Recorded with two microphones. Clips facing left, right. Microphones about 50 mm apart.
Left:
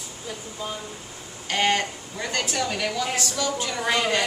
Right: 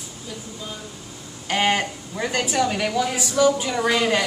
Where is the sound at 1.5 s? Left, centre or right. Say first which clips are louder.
Right 2 dB; centre.